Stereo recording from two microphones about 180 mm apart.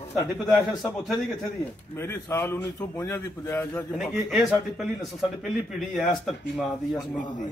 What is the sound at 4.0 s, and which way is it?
Speech, centre (ahead or behind).